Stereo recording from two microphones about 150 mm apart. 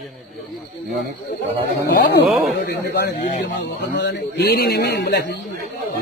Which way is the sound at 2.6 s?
90° left.